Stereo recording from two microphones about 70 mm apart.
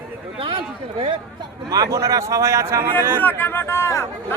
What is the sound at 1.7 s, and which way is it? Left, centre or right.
A man's voice, right.